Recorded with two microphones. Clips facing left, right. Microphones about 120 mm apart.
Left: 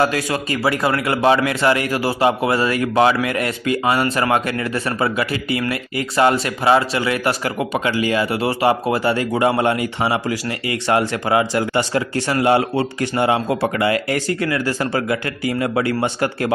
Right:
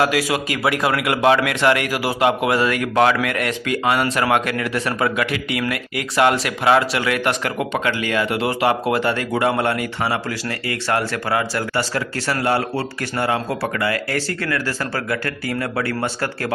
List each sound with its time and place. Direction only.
0.0 s a man's voice: 5° right (ahead or behind); by 16.5 s 15° left (ahead or behind)